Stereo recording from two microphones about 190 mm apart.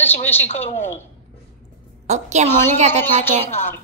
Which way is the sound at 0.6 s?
35° left (ahead or behind).